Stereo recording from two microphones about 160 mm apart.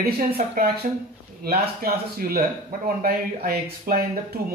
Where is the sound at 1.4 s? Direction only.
70° right (ahead or behind).